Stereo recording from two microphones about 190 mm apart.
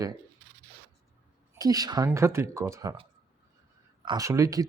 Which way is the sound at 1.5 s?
20° right (ahead or behind).